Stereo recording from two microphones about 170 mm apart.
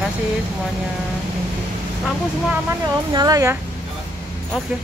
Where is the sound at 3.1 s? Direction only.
20° right (ahead or behind).